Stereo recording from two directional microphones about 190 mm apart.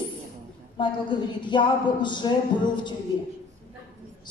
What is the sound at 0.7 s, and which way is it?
A child's voice, 25° left (ahead or behind).